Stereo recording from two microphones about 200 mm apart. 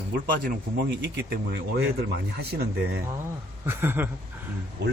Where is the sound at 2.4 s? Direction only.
55° right (ahead or behind).